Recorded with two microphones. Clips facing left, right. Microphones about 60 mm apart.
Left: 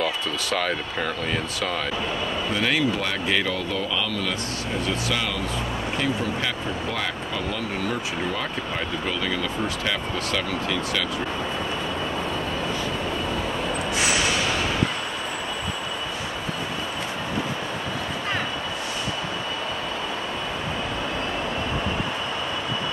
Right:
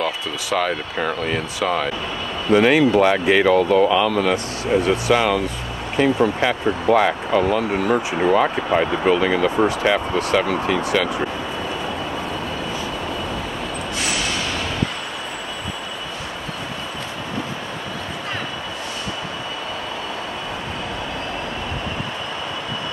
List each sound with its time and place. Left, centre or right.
0.0 s speech: centre
2.5 s speech: right